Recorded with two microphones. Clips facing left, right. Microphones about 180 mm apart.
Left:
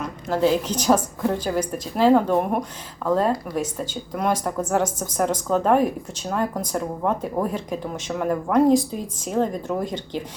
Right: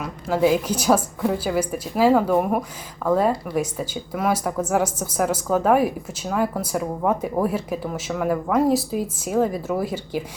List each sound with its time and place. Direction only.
0.0 s a woman's voice: 10° right (ahead or behind)